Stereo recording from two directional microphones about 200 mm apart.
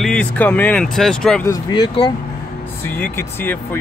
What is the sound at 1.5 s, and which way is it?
Speech, 20° left (ahead or behind).